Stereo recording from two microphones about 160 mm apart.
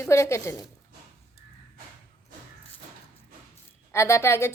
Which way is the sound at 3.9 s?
15° left (ahead or behind).